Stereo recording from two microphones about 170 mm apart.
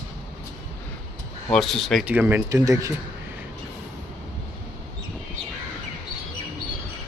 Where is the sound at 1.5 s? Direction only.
Centre (ahead or behind).